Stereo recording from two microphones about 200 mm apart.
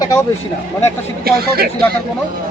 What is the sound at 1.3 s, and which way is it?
Speech, 50° right (ahead or behind).